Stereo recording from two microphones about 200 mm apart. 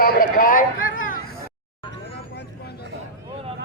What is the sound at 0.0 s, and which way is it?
Speech, 45° left (ahead or behind).